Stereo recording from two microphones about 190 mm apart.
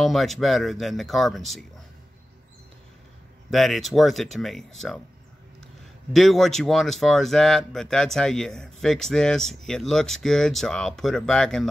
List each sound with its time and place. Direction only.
0.0 s speech: centre (ahead or behind)
3.4 s speech: centre (ahead or behind)
6.1 s speech: centre (ahead or behind)